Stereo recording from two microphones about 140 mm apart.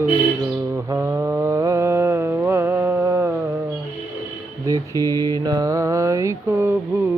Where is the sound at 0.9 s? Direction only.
20° right (ahead or behind).